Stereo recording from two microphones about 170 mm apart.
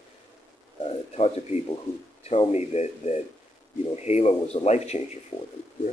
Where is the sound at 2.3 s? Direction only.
40° left (ahead or behind).